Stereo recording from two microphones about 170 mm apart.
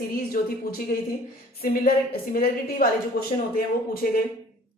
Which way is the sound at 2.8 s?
60° left (ahead or behind).